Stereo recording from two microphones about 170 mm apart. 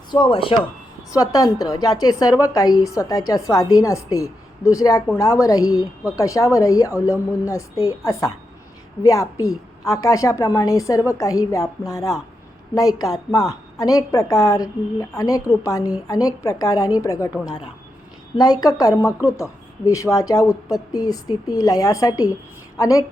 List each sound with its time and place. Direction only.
0.1 s speech: 30° left (ahead or behind)
1.1 s a woman's voice: 20° left (ahead or behind)